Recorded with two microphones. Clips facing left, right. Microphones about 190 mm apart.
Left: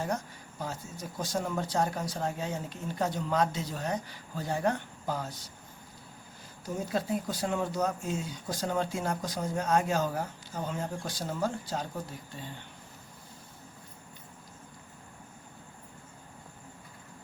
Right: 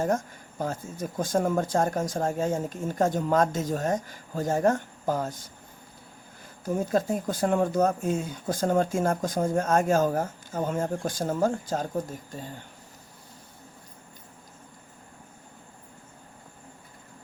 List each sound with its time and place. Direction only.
0.0 s speech: 45° right (ahead or behind)
6.7 s speech: 45° right (ahead or behind)